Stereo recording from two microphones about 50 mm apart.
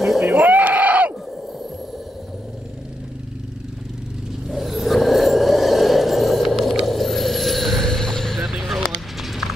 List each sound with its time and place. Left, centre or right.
0.2 s sheep: right
4.5 s vehicle: centre
9.2 s clip-clop: centre